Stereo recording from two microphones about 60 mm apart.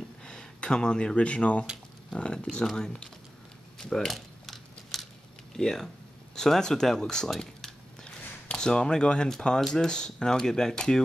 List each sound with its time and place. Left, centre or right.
0.2 s speech: centre
3.7 s a sound: centre
5.6 s speech: centre